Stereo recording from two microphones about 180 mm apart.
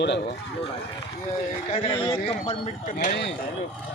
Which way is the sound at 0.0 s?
75° left (ahead or behind).